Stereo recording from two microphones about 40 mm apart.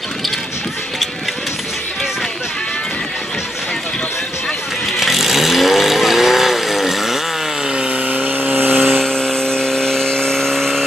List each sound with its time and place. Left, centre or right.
5.0 s vehicle: centre
8.1 s vehicle: right
8.8 s vehicle: centre